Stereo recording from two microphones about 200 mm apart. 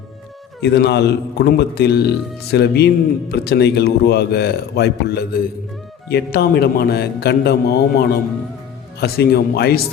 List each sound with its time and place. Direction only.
0.6 s a man's voice: 55° left (ahead or behind)